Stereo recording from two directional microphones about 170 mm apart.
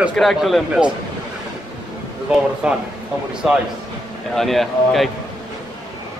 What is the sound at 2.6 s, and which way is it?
Speech, 5° right (ahead or behind).